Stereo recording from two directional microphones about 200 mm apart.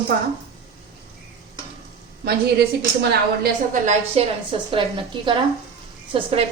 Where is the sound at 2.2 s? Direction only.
55° right (ahead or behind).